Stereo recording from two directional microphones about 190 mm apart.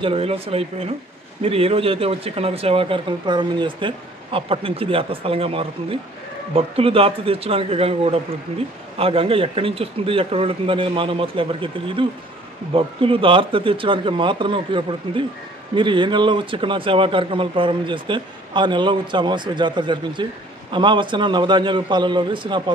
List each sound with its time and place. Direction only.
0.0 s speech: 30° right (ahead or behind)